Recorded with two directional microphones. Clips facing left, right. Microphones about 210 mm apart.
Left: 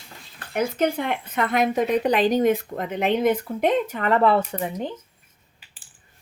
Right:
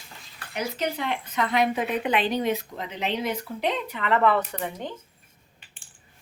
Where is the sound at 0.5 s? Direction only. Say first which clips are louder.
Left 6 dB; 50° left (ahead or behind); by 4.9 s 25° left (ahead or behind).